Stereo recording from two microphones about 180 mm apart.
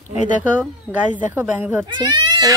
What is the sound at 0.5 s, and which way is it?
Speech, 10° right (ahead or behind).